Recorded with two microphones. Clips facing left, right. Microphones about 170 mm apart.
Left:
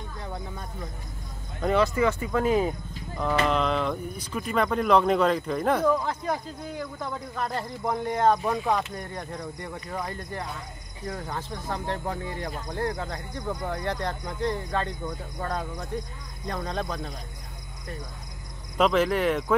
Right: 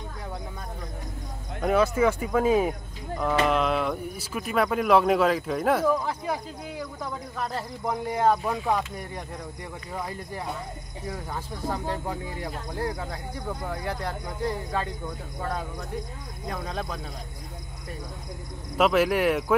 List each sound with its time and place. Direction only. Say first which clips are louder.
1.6 s speech: right 1 dB; 5° right (ahead or behind)
18.8 s speech: right 1 dB; 5° right (ahead or behind)